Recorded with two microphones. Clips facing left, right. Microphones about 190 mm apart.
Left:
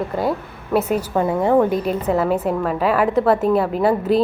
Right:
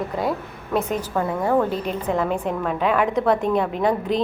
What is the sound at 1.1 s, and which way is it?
A woman's voice, 20° left (ahead or behind).